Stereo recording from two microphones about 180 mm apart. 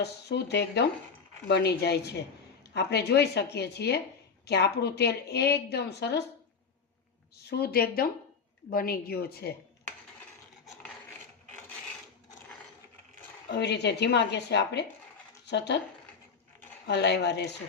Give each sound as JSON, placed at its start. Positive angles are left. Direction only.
{"t": 0.0, "sound": "a woman's voice", "side_deg": 70}
{"t": 7.5, "sound": "a woman's voice", "side_deg": 60}
{"t": 13.5, "sound": "a woman's voice", "side_deg": 70}
{"t": 16.8, "sound": "a woman's voice", "side_deg": 70}